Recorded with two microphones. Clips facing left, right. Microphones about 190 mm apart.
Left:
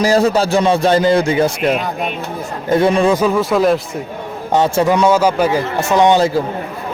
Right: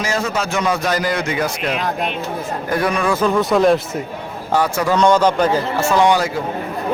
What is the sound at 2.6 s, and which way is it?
Speech, 25° left (ahead or behind).